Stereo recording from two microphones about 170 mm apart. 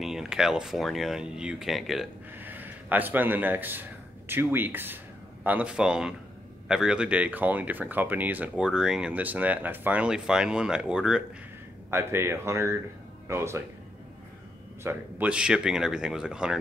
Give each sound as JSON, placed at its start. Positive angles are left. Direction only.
{"t": 0.0, "sound": "speech", "side_deg": -5}
{"t": 2.3, "sound": "speech", "side_deg": -10}
{"t": 14.8, "sound": "speech", "side_deg": -10}